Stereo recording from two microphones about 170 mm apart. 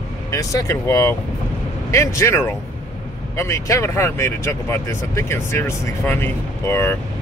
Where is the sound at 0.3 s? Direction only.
20° left (ahead or behind).